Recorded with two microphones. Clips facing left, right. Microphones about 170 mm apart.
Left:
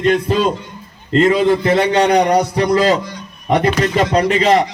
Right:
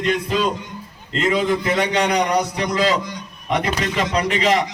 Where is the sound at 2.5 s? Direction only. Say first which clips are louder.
Left 6 dB; 45° left (ahead or behind).